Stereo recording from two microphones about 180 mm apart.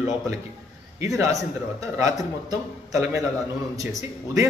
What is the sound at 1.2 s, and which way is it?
A man's voice, 15° right (ahead or behind).